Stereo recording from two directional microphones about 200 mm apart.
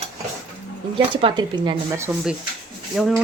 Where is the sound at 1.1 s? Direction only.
25° right (ahead or behind).